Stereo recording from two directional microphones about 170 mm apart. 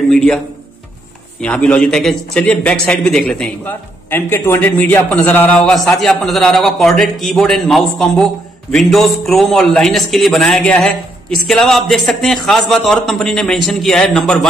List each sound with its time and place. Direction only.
0.1 s a man's voice: centre (ahead or behind)
1.4 s a man's voice: 5° left (ahead or behind)